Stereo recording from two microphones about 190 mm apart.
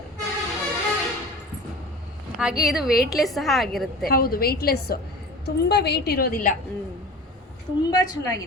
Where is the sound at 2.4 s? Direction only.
5° right (ahead or behind).